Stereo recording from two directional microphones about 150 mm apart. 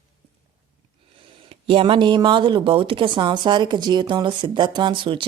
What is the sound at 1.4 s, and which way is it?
Speech, 40° right (ahead or behind).